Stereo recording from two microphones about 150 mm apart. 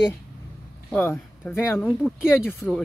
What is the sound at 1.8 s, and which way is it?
Speech, 5° right (ahead or behind).